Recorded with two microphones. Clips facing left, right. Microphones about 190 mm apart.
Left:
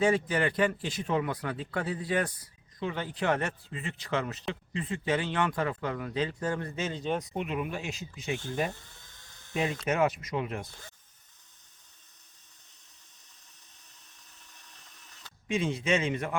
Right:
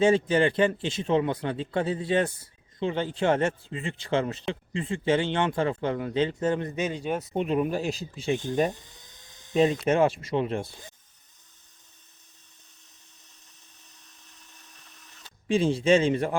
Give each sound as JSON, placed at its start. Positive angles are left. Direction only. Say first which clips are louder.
{"t": 0.0, "sound": "speech", "louder": "right 5 dB", "side_deg": -25}
{"t": 7.3, "sound": "speech", "louder": "right 7 dB", "side_deg": -35}
{"t": 8.4, "sound": "speech", "louder": "right 6 dB", "side_deg": -20}
{"t": 8.7, "sound": "dental drill", "louder": "right 3 dB", "side_deg": -15}
{"t": 9.8, "sound": "speech", "louder": "right 5 dB", "side_deg": -30}
{"t": 15.4, "sound": "speech", "louder": "right 7 dB", "side_deg": -30}